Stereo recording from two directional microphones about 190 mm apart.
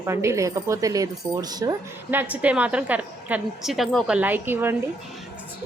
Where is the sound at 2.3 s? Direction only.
5° right (ahead or behind).